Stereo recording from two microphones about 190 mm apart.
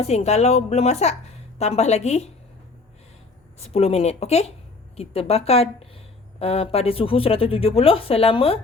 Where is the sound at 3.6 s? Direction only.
35° left (ahead or behind).